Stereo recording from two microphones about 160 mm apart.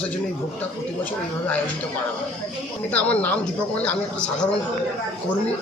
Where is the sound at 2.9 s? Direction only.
10° left (ahead or behind).